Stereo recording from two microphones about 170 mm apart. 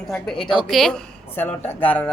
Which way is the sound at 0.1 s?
5° left (ahead or behind).